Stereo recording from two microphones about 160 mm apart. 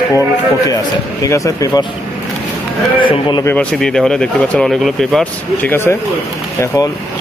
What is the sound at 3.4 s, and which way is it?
Speech, 10° left (ahead or behind).